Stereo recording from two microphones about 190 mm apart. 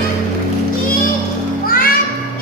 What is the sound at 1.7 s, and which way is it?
Children playing, 50° left (ahead or behind).